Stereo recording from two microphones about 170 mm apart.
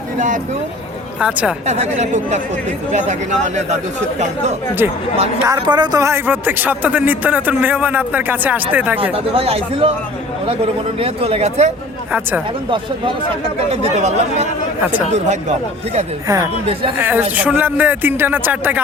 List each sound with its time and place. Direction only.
1.2 s speech: 5° right (ahead or behind)
1.6 s speech: 40° right (ahead or behind)
4.8 s speech: 10° right (ahead or behind)
5.4 s speech: 25° right (ahead or behind)
9.1 s speech: 35° right (ahead or behind)
11.0 s speech: 35° right (ahead or behind)
13.7 s speech: 40° right (ahead or behind)
16.2 s speech: 20° right (ahead or behind)